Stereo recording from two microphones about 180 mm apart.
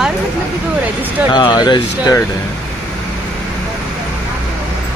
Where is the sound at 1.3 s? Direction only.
25° left (ahead or behind).